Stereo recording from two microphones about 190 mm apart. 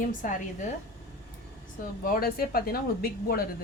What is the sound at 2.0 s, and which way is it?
A woman's voice, 50° left (ahead or behind).